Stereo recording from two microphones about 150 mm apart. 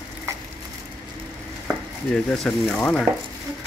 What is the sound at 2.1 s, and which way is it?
Speech, 5° left (ahead or behind).